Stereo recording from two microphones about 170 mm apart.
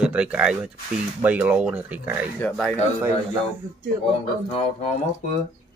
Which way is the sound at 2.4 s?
10° left (ahead or behind).